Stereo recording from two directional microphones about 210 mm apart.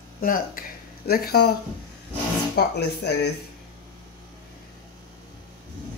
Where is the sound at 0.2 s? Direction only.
40° left (ahead or behind).